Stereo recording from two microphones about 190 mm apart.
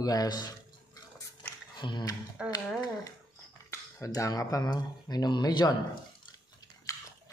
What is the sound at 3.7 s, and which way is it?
Speech, 15° left (ahead or behind).